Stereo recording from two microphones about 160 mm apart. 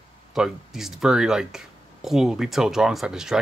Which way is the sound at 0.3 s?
Centre (ahead or behind).